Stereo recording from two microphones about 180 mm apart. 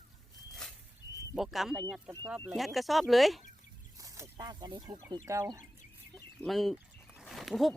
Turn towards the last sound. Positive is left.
turn(degrees=0)  # may be behind; listen again after turning